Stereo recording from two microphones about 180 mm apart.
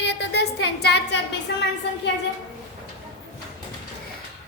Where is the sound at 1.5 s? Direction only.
70° left (ahead or behind).